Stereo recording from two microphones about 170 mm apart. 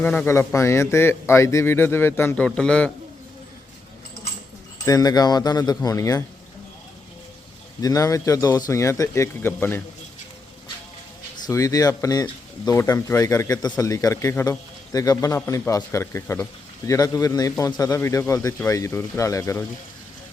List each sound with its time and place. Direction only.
0.0 s speech: 10° left (ahead or behind)
4.9 s speech: 20° left (ahead or behind)
7.8 s speech: 20° left (ahead or behind)
11.4 s speech: 20° left (ahead or behind)